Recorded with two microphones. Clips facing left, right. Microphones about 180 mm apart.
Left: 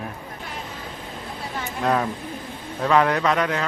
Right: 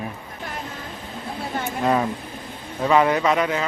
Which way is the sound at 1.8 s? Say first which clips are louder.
Right 1 dB; 5° right (ahead or behind).